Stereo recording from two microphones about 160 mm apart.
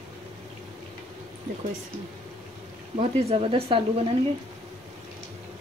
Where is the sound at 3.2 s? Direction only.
35° right (ahead or behind).